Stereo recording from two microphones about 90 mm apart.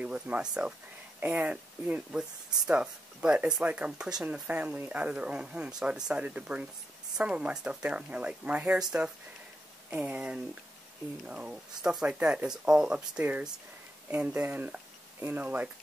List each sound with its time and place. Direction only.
0.0 s speech: 15° right (ahead or behind)
9.8 s speech: 20° right (ahead or behind)